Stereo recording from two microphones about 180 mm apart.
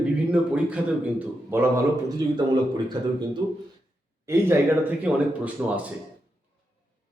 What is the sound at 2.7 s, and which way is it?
Speech, 25° right (ahead or behind).